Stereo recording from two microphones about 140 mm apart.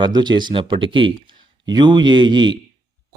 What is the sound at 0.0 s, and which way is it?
Speech, 30° right (ahead or behind).